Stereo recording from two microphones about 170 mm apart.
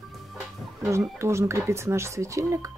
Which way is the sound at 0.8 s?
15° right (ahead or behind).